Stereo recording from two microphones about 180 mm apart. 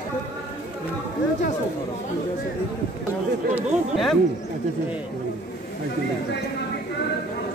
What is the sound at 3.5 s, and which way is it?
Speech, centre (ahead or behind).